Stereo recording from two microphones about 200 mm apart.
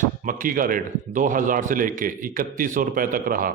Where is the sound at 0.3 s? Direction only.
45° right (ahead or behind).